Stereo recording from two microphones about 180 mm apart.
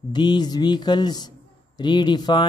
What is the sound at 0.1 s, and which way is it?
Speech, 25° left (ahead or behind).